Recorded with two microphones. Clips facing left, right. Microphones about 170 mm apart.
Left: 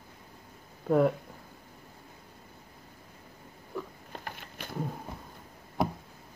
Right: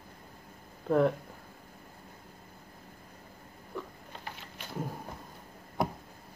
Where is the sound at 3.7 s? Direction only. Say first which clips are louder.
Left 2 dB; 5° left (ahead or behind).